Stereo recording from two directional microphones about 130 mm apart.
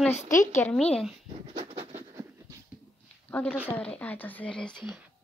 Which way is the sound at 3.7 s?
10° left (ahead or behind).